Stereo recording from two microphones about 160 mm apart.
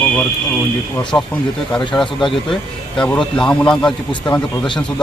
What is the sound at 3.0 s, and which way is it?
Speech, 5° left (ahead or behind).